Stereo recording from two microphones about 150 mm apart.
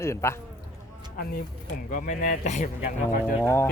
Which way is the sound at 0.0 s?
20° left (ahead or behind).